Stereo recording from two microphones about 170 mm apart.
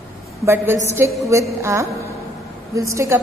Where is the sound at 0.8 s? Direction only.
15° right (ahead or behind).